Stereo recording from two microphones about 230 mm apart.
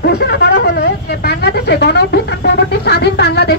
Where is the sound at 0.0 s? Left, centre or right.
Left.